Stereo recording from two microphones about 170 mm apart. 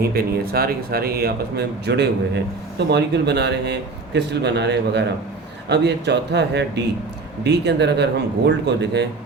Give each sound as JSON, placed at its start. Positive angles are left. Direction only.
{"t": 0.1, "sound": "speech", "side_deg": -65}